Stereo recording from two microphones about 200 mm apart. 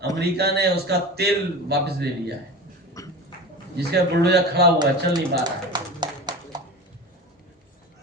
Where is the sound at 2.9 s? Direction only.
15° left (ahead or behind).